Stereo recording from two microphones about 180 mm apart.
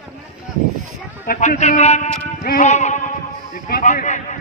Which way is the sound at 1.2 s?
50° left (ahead or behind).